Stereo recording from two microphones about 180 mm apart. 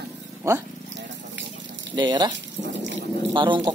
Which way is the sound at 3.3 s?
25° right (ahead or behind).